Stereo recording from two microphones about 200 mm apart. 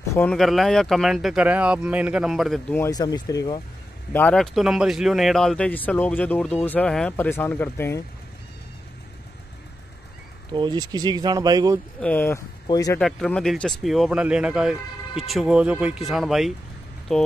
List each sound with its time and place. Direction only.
0.1 s speech: 5° left (ahead or behind)
2.7 s speech: 15° left (ahead or behind)
4.1 s speech: 5° left (ahead or behind)
10.5 s speech: 20° right (ahead or behind)
12.0 s speech: 10° left (ahead or behind)
13.0 s speech: 5° left (ahead or behind)